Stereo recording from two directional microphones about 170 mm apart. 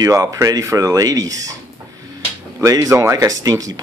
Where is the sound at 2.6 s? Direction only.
20° right (ahead or behind).